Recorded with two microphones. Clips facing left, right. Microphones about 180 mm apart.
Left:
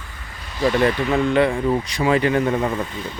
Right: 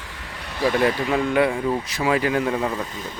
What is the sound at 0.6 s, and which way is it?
Speech, 5° right (ahead or behind).